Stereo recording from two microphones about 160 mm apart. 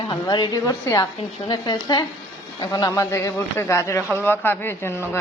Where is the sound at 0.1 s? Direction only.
25° left (ahead or behind).